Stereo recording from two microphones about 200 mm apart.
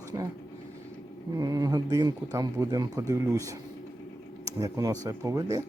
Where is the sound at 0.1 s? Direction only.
20° right (ahead or behind).